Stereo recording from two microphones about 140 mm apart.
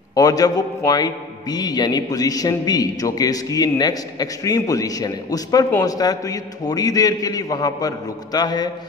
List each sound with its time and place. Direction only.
0.1 s a man's voice: 25° left (ahead or behind)